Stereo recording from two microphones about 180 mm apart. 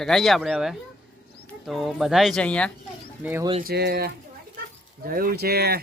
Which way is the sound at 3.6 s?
60° right (ahead or behind).